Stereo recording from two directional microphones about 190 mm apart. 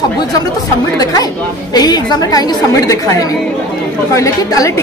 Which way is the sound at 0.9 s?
20° left (ahead or behind).